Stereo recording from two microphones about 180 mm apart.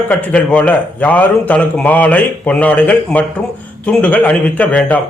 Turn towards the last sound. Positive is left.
turn(degrees=5)  # may be behind; listen again after turning